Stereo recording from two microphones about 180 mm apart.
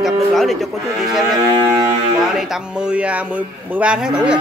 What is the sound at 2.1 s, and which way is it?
Speech, centre (ahead or behind).